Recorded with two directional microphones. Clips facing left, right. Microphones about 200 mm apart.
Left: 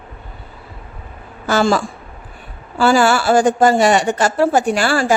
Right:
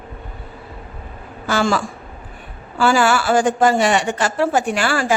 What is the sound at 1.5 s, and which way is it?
A woman's voice, 40° left (ahead or behind).